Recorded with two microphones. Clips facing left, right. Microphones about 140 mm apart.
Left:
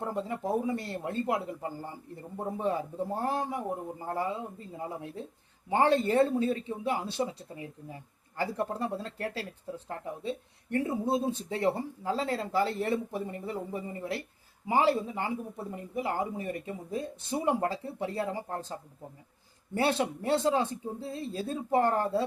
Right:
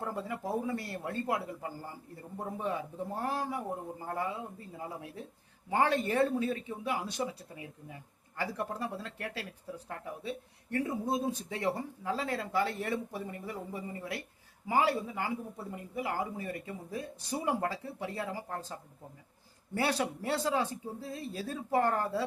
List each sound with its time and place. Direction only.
0.0 s speech: 25° left (ahead or behind)